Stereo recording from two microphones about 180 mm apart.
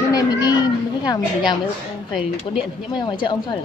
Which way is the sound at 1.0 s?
25° left (ahead or behind).